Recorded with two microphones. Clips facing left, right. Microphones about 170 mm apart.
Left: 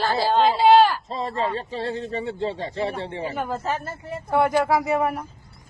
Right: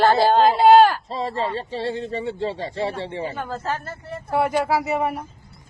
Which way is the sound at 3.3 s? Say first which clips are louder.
Left 1 dB; 15° left (ahead or behind).